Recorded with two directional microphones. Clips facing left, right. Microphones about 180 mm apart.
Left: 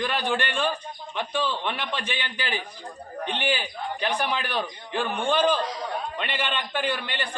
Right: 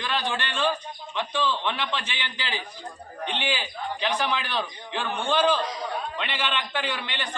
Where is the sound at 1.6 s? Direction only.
50° left (ahead or behind).